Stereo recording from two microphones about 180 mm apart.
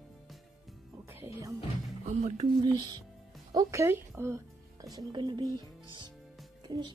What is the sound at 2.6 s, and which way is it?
Speech, 20° right (ahead or behind).